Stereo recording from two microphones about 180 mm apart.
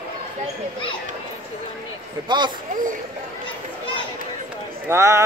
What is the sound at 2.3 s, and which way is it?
Speech, 25° right (ahead or behind).